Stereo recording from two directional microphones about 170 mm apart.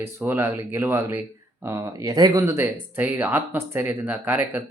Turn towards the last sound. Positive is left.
turn(degrees=-10)  # may be behind; listen again after turning